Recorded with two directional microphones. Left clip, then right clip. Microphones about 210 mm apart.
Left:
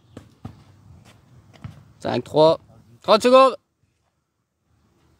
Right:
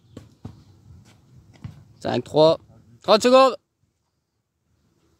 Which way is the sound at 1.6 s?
Centre (ahead or behind).